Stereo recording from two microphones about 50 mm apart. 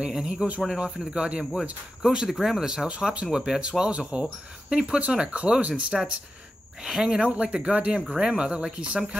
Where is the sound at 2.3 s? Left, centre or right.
Centre.